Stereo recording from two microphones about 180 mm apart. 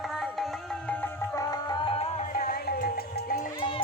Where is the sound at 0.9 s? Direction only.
15° left (ahead or behind); by 2.2 s 30° left (ahead or behind).